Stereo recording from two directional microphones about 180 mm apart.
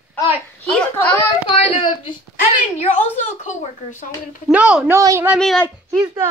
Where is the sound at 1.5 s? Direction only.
30° left (ahead or behind).